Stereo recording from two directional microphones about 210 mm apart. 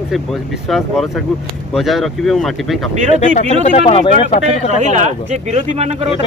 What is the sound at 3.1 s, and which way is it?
Speech, 35° left (ahead or behind).